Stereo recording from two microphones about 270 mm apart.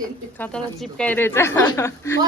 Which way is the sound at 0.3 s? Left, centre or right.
Centre.